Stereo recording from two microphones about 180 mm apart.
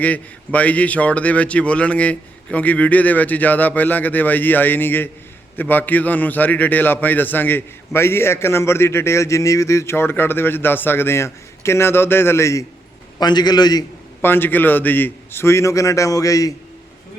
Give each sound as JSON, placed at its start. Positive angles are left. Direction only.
{"t": 0.0, "sound": "a man's voice", "side_deg": 10}